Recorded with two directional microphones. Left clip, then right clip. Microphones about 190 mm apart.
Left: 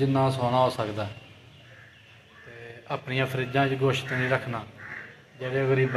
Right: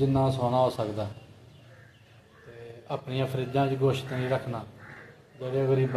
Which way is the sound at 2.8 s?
Centre (ahead or behind).